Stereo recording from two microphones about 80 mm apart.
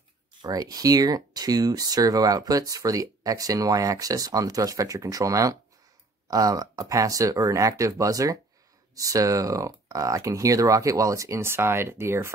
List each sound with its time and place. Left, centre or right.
0.4 s speech: right